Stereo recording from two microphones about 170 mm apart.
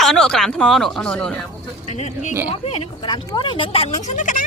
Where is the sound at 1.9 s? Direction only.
45° left (ahead or behind).